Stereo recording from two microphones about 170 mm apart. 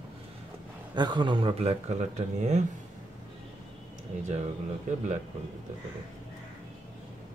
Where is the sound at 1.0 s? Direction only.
25° right (ahead or behind); by 2.6 s 45° right (ahead or behind).